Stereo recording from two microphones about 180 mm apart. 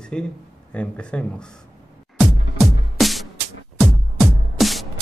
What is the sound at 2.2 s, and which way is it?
Music, centre (ahead or behind).